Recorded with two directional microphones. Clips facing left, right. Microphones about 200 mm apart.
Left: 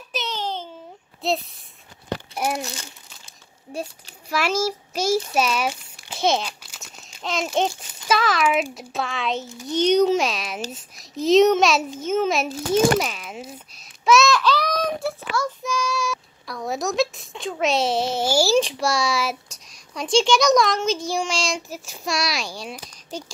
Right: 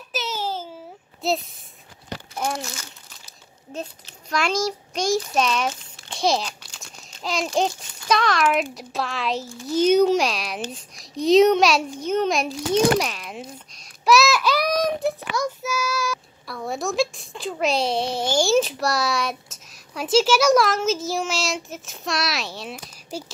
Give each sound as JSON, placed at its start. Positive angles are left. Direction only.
{"t": 0.1, "sound": "baby cry", "side_deg": -5}
{"t": 1.2, "sound": "speech", "side_deg": 0}
{"t": 2.6, "sound": "speech", "side_deg": 30}
{"t": 4.3, "sound": "a child's voice", "side_deg": 5}
{"t": 14.0, "sound": "child singing", "side_deg": 0}
{"t": 15.6, "sound": "a child's voice", "side_deg": -5}